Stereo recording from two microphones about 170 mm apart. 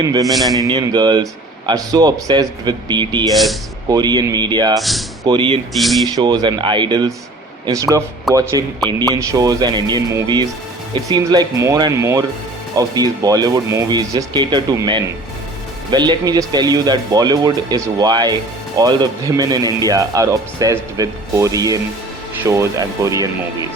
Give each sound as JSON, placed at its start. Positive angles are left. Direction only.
{"t": 0.3, "sound": "speech", "side_deg": 0}
{"t": 0.6, "sound": "speech", "side_deg": -25}
{"t": 3.3, "sound": "speech", "side_deg": 0}
{"t": 3.8, "sound": "speech", "side_deg": -25}
{"t": 4.8, "sound": "speech", "side_deg": 0}
{"t": 5.2, "sound": "speech", "side_deg": -25}
{"t": 5.7, "sound": "speech", "side_deg": 0}
{"t": 6.1, "sound": "speech", "side_deg": -25}